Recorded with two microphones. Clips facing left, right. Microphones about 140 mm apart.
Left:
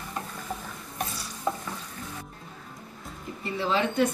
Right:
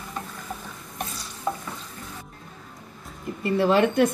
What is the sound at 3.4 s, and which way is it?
Speech, 60° right (ahead or behind).